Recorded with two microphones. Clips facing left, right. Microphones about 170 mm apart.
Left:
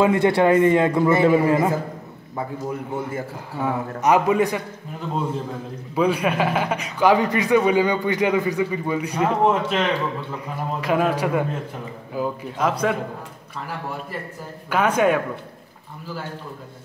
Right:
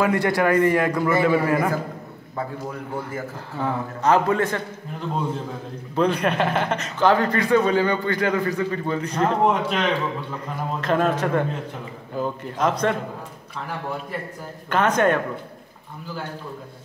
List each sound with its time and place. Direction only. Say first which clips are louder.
0.0 s a man's voice: left 3 dB; 25° left (ahead or behind)
3.5 s a man's voice: left 2 dB; 15° left (ahead or behind)
5.9 s a man's voice: left 1 dB; 5° left (ahead or behind)
14.7 s a man's voice: left 1 dB; 10° left (ahead or behind)